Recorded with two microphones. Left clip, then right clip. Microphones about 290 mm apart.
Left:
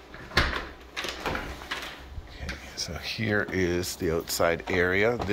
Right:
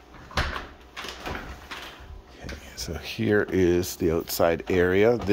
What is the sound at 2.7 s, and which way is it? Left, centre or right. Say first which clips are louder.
Speech: even; right.